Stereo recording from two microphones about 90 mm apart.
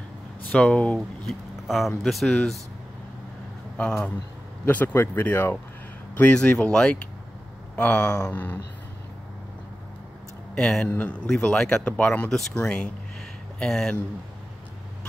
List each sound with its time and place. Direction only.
0.5 s speech: 15° left (ahead or behind)
3.7 s speech: 15° left (ahead or behind)
10.5 s speech: 10° left (ahead or behind)